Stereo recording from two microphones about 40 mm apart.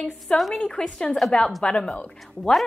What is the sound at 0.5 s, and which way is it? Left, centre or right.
Speech, left.